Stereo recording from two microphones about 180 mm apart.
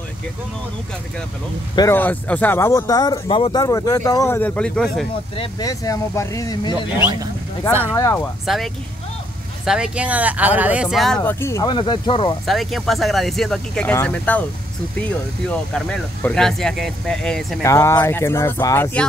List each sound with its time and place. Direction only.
1.8 s speech: 15° left (ahead or behind)
5.3 s speech: 30° left (ahead or behind)
5.7 s speech: 20° left (ahead or behind)
8.5 s speech: centre (ahead or behind)
11.1 s speech: 15° left (ahead or behind)
12.4 s speech: centre (ahead or behind)
17.6 s speech: 15° left (ahead or behind)